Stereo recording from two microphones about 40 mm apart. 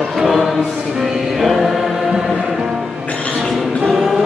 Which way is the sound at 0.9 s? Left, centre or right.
Centre.